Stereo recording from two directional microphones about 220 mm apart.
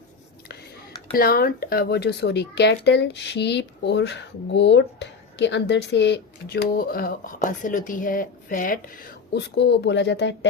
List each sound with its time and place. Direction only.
1.1 s speech: 45° left (ahead or behind)
9.3 s speech: 50° left (ahead or behind)